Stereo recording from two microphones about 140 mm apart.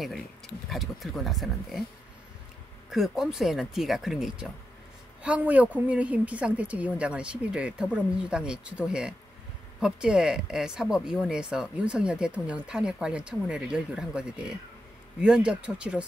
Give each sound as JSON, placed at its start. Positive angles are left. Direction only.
{"t": 0.7, "sound": "speech", "side_deg": 0}
{"t": 2.9, "sound": "speech", "side_deg": -5}